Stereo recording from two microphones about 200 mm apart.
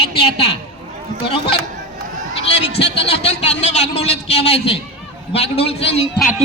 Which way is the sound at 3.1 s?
30° left (ahead or behind).